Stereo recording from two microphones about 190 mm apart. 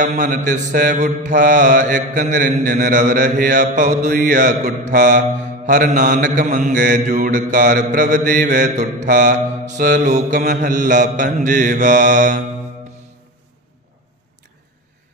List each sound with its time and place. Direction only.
0.0 s mantra: 40° right (ahead or behind)